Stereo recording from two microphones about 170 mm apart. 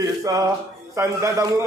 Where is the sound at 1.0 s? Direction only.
15° right (ahead or behind).